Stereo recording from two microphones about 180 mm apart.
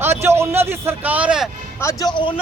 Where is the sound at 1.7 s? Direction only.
15° left (ahead or behind).